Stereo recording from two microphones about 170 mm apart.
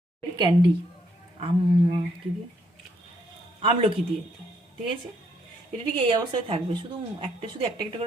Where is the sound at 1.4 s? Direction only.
30° right (ahead or behind).